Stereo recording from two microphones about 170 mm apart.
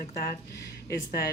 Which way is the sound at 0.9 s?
65° left (ahead or behind).